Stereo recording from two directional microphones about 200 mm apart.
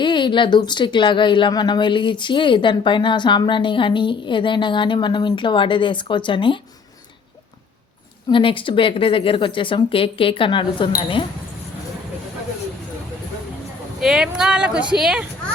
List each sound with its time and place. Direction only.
0.0 s speech: 25° left (ahead or behind)
8.3 s speech: 25° left (ahead or behind)
14.0 s speech: 5° right (ahead or behind)